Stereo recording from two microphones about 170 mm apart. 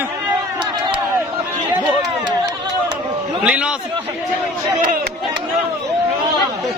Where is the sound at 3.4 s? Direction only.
5° right (ahead or behind).